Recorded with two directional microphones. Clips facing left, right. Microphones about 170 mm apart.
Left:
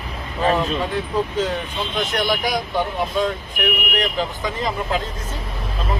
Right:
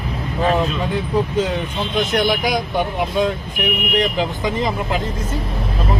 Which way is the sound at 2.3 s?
15° right (ahead or behind).